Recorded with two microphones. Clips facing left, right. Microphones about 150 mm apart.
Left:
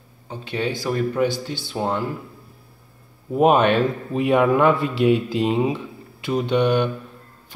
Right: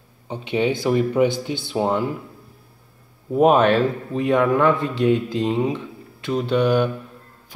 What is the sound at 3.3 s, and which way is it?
Speech, centre (ahead or behind).